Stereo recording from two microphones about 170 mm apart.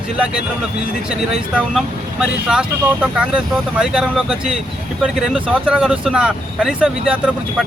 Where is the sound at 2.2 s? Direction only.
5° right (ahead or behind).